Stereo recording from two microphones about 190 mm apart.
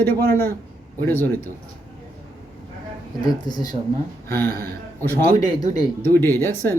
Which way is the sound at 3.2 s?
20° left (ahead or behind).